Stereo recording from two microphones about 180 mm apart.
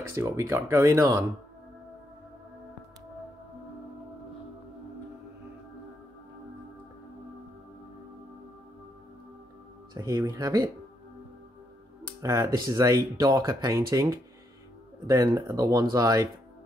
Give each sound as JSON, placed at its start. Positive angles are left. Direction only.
{"t": 0.1, "sound": "speech", "side_deg": -15}
{"t": 9.9, "sound": "speech", "side_deg": -20}
{"t": 12.2, "sound": "speech", "side_deg": -20}